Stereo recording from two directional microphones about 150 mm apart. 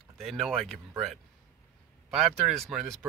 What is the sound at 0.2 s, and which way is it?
Speech, centre (ahead or behind).